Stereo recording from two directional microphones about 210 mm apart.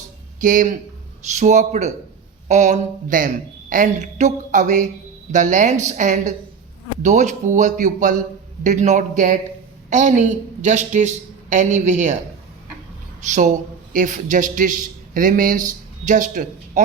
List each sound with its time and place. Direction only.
0.3 s a woman's voice: 40° right (ahead or behind)
13.2 s a man's voice: 35° right (ahead or behind)